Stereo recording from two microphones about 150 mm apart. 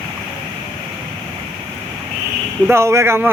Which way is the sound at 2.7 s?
20° right (ahead or behind).